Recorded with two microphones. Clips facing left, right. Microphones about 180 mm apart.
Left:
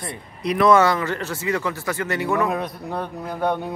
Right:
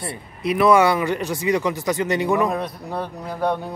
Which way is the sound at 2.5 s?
Centre (ahead or behind).